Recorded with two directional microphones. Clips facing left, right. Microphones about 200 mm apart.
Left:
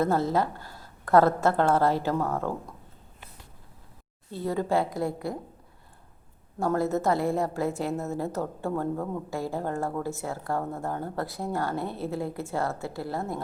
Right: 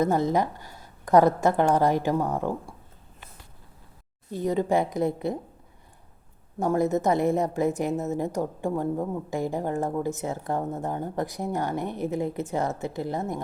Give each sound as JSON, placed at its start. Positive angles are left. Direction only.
{"t": 0.0, "sound": "a woman's voice", "side_deg": -15}
{"t": 4.3, "sound": "a woman's voice", "side_deg": -15}
{"t": 6.6, "sound": "a woman's voice", "side_deg": -15}